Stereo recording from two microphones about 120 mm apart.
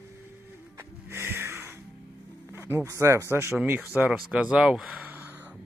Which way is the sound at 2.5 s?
20° right (ahead or behind).